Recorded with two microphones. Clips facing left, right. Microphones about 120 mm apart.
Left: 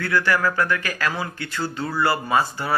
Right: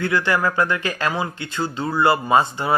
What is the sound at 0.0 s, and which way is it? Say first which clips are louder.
Speech: right 1 dB; 20° right (ahead or behind).